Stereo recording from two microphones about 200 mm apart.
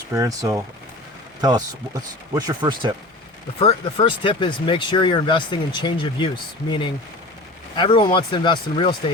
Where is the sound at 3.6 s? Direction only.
30° left (ahead or behind).